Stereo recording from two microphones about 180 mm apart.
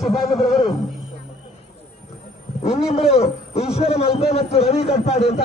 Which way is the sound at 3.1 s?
35° left (ahead or behind).